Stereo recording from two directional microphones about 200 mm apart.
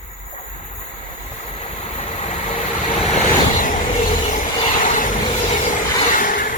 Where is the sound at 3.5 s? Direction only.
35° left (ahead or behind).